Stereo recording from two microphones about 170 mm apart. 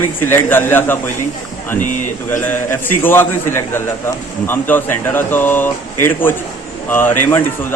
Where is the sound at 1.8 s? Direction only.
50° left (ahead or behind).